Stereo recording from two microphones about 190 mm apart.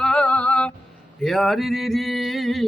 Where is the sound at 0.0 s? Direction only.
5° left (ahead or behind).